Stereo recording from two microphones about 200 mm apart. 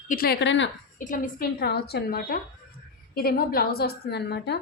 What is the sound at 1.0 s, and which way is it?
A woman's voice, 45° left (ahead or behind).